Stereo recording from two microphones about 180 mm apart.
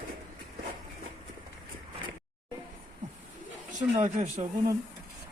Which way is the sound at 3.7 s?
40° right (ahead or behind).